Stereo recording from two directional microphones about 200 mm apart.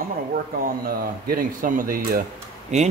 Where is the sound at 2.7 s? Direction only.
35° right (ahead or behind).